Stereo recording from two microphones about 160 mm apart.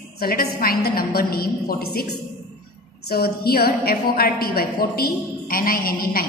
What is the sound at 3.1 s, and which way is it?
A woman's voice, 75° left (ahead or behind).